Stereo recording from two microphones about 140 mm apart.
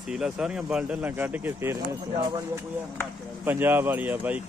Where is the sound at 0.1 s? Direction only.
5° right (ahead or behind).